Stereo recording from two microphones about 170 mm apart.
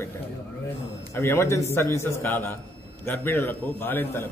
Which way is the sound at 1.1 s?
15° left (ahead or behind).